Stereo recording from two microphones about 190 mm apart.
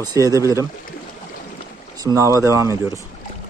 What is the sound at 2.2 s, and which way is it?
Speech, 15° right (ahead or behind).